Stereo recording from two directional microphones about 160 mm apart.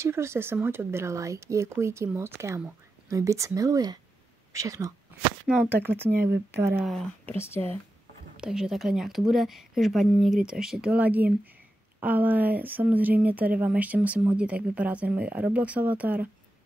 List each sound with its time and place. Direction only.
0.0 s speech: 15° right (ahead or behind)
5.5 s speech: 10° right (ahead or behind)
6.8 s speech: centre (ahead or behind)
7.3 s speech: 15° left (ahead or behind)
8.4 s speech: 5° right (ahead or behind)